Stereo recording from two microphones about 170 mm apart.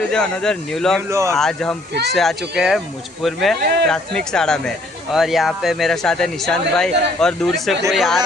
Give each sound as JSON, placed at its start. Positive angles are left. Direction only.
{"t": 0.1, "sound": "speech", "side_deg": 5}
{"t": 1.1, "sound": "speech", "side_deg": -15}
{"t": 1.4, "sound": "speech", "side_deg": 5}